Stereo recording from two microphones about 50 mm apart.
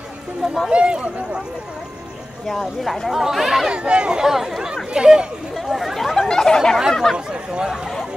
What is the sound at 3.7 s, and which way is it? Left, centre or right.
Speech, right.